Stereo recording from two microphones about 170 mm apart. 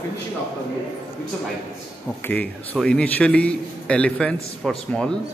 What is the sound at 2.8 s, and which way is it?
A man's voice, 5° left (ahead or behind).